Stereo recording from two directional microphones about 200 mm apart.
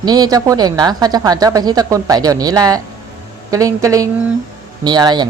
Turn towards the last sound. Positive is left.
turn(degrees=-20)  # may be behind; listen again after turning